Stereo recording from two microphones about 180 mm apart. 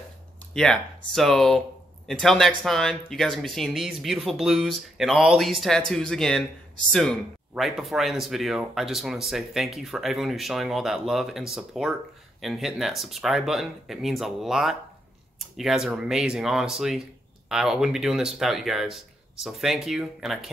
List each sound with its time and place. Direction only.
0.6 s speech: 5° left (ahead or behind)